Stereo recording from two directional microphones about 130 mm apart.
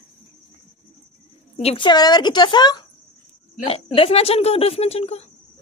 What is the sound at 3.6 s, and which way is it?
Speech, 45° left (ahead or behind).